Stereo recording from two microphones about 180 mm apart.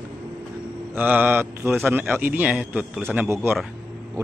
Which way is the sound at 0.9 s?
10° right (ahead or behind).